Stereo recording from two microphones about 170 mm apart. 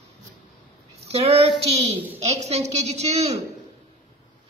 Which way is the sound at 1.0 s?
35° right (ahead or behind).